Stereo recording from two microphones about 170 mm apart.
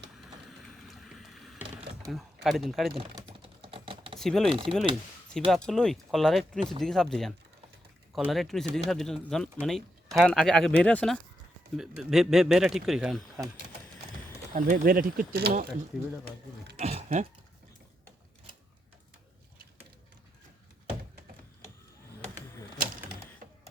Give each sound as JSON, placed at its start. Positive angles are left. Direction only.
{"t": 0.6, "sound": "vehicle", "side_deg": 0}
{"t": 2.0, "sound": "speech", "side_deg": 0}
{"t": 3.2, "sound": "typing", "side_deg": -35}
{"t": 4.2, "sound": "speech", "side_deg": 0}
{"t": 14.5, "sound": "speech", "side_deg": -55}
{"t": 16.7, "sound": "a sound", "side_deg": -40}